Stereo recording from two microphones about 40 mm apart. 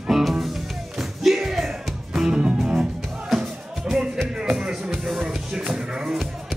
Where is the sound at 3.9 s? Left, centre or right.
Right.